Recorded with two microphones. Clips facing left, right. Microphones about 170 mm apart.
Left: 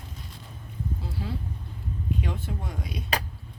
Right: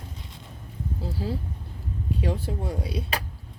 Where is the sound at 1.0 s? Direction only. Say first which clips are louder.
Right 8 dB; 35° right (ahead or behind).